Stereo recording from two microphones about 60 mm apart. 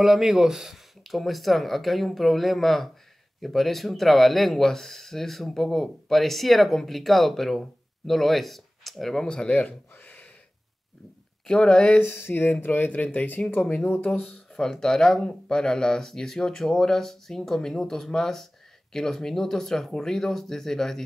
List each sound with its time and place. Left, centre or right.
0.0 s speech: centre
9.9 s a sound: left
11.4 s speech: centre
12.0 s speech: left
14.1 s speech: centre